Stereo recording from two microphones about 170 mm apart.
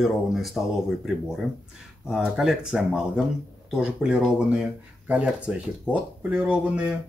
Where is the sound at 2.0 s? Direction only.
Centre (ahead or behind).